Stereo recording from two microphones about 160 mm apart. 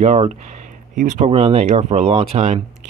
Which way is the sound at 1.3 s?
35° right (ahead or behind).